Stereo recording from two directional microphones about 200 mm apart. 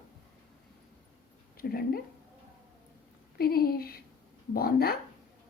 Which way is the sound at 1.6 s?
45° left (ahead or behind).